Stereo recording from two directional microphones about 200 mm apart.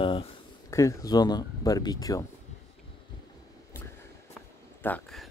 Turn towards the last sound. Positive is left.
turn(degrees=5)  # may be behind; listen again after turning